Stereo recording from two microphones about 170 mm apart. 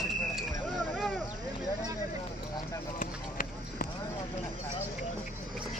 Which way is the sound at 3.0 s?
50° left (ahead or behind).